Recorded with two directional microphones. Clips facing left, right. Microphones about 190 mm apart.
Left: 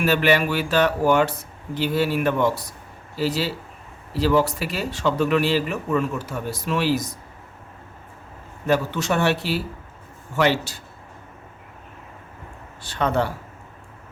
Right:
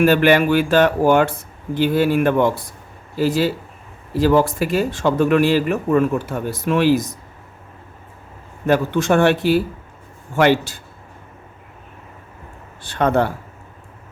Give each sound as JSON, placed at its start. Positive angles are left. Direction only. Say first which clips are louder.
{"t": 0.0, "sound": "speech", "louder": "right 6 dB", "side_deg": -55}
{"t": 8.6, "sound": "speech", "louder": "right 5 dB", "side_deg": -55}
{"t": 12.8, "sound": "speech", "louder": "right 5 dB", "side_deg": -55}